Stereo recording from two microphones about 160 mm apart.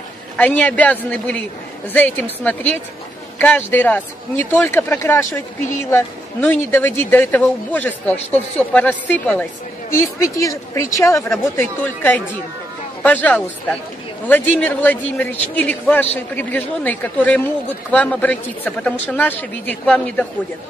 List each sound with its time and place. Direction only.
0.4 s speech: 10° left (ahead or behind)